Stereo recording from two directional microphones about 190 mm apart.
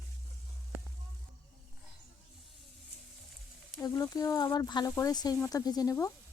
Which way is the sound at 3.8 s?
20° left (ahead or behind).